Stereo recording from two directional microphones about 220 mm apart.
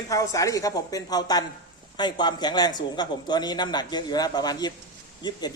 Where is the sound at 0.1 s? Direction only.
15° left (ahead or behind).